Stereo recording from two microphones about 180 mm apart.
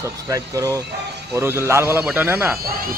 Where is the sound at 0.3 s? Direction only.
20° right (ahead or behind).